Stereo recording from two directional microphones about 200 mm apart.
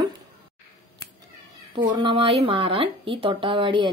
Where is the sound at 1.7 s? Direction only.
25° right (ahead or behind).